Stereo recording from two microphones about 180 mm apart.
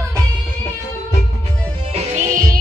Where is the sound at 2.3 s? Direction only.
50° right (ahead or behind).